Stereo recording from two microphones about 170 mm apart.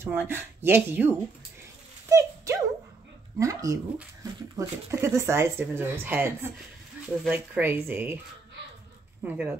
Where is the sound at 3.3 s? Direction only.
20° right (ahead or behind).